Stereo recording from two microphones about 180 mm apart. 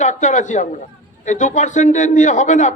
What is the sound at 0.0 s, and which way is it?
A man's voice, 40° left (ahead or behind).